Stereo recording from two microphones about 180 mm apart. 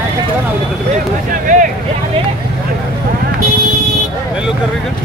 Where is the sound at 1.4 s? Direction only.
45° right (ahead or behind).